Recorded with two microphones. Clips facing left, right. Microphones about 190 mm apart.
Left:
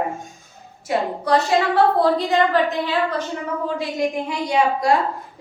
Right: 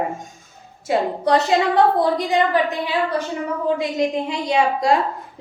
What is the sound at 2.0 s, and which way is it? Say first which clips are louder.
A woman's voice: left 1 dB; 15° right (ahead or behind).